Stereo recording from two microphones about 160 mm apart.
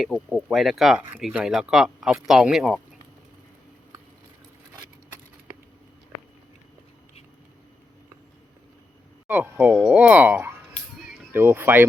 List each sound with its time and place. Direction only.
0.3 s speech: centre (ahead or behind)
9.2 s speech: 10° right (ahead or behind)